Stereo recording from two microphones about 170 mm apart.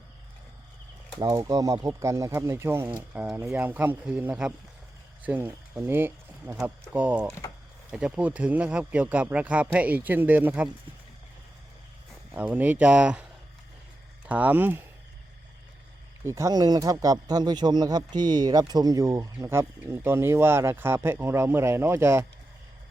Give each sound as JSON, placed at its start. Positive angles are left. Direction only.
{"t": 1.2, "sound": "speech", "side_deg": -20}
{"t": 12.3, "sound": "speech", "side_deg": -10}
{"t": 14.3, "sound": "speech", "side_deg": -10}
{"t": 16.2, "sound": "speech", "side_deg": -15}